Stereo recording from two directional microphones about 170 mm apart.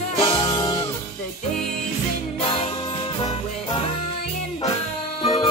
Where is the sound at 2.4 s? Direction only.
30° left (ahead or behind).